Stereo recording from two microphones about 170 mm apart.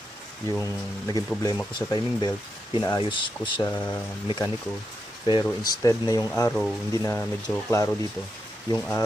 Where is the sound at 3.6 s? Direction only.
10° left (ahead or behind).